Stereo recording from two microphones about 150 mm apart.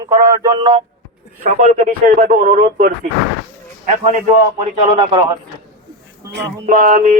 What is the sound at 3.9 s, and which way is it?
Speech, 50° right (ahead or behind).